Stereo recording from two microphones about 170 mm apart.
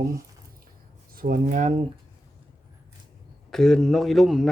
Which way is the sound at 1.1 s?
55° right (ahead or behind).